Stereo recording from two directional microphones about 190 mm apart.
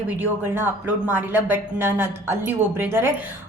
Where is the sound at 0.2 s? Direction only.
10° right (ahead or behind).